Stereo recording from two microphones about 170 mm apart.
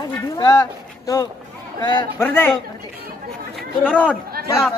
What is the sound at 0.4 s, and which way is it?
A man's voice, 20° left (ahead or behind).